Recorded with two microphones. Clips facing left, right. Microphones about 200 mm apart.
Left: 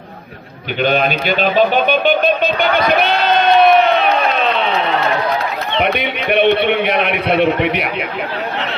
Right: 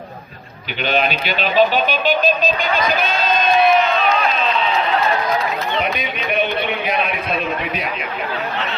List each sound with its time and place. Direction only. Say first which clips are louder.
0.8 s a man's voice: left 4 dB; 45° left (ahead or behind); by 7.9 s 70° left (ahead or behind)